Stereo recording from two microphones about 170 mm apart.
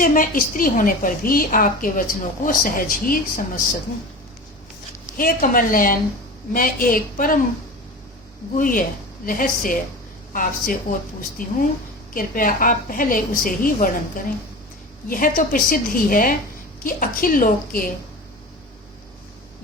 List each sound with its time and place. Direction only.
0.0 s a woman's voice: 55° left (ahead or behind)
5.1 s a woman's voice: 55° left (ahead or behind)
8.5 s a woman's voice: 55° left (ahead or behind)